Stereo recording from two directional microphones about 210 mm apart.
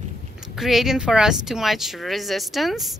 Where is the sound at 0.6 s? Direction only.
Centre (ahead or behind).